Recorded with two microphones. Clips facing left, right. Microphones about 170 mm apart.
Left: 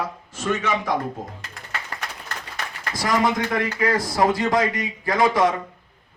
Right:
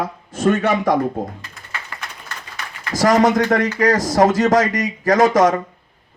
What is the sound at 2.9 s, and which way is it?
A man's voice, 45° right (ahead or behind).